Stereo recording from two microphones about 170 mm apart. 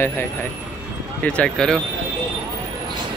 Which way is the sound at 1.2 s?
5° left (ahead or behind).